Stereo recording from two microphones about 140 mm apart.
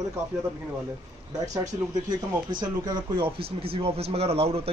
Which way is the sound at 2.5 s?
30° right (ahead or behind).